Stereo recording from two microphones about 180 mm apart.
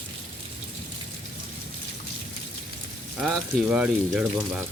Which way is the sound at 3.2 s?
Centre (ahead or behind).